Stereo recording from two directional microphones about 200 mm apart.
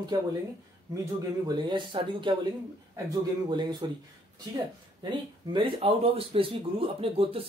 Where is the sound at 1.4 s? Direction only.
20° right (ahead or behind).